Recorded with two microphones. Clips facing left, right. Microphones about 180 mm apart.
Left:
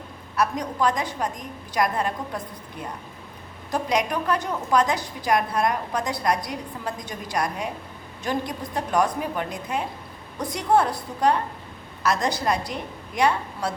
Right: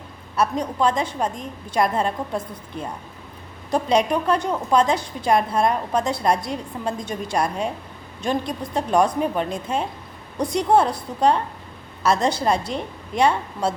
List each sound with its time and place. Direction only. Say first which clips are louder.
0.3 s a woman's voice: right 3 dB; 25° right (ahead or behind)
3.7 s a woman's voice: right 5 dB; 25° right (ahead or behind)